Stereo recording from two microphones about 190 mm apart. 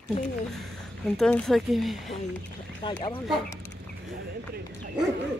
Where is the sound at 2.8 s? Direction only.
25° left (ahead or behind).